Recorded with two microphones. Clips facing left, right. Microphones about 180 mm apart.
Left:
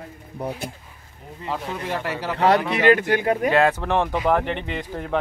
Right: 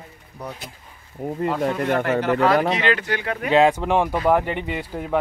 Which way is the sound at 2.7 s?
50° left (ahead or behind).